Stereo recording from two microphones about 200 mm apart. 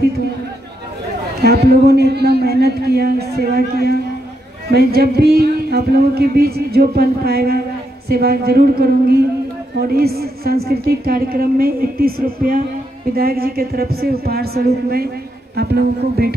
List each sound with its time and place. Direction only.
1.4 s speech: 55° right (ahead or behind)